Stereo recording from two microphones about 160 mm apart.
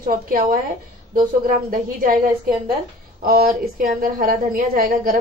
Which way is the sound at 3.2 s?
65° right (ahead or behind).